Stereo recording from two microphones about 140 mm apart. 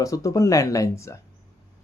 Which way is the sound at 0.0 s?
25° left (ahead or behind).